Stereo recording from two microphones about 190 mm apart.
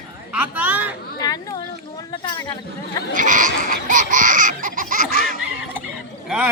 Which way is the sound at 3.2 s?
45° right (ahead or behind).